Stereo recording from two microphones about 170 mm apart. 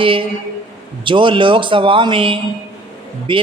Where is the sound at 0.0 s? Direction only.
30° right (ahead or behind).